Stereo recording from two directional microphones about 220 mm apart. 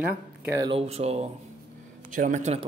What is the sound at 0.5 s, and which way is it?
Speech, 20° right (ahead or behind).